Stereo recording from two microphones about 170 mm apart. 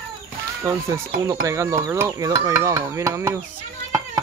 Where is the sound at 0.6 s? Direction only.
20° right (ahead or behind).